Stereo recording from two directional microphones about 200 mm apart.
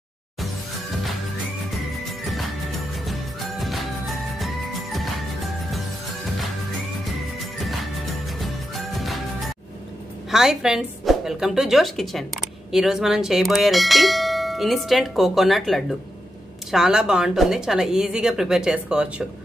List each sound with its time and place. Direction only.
1.7 s music: centre (ahead or behind)
7.1 s music: centre (ahead or behind)
10.3 s speech: 5° right (ahead or behind)